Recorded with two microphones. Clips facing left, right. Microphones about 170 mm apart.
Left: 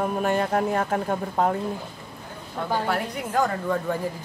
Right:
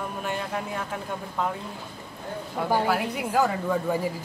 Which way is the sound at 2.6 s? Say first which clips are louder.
Right 1 dB; 10° right (ahead or behind).